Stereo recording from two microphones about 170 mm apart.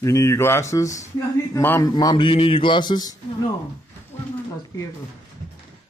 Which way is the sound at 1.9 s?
25° left (ahead or behind).